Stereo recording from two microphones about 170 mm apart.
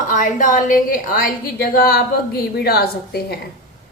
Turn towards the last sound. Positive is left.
turn(degrees=65)  # may be behind; listen again after turning